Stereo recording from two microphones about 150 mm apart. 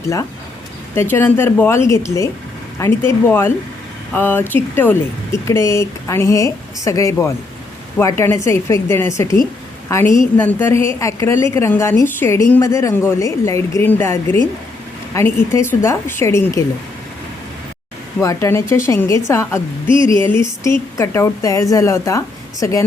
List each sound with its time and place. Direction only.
0.9 s a woman's voice: 15° left (ahead or behind)
18.2 s a woman's voice: 20° left (ahead or behind)